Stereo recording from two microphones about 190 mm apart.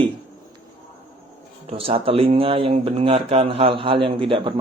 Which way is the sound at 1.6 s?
30° right (ahead or behind).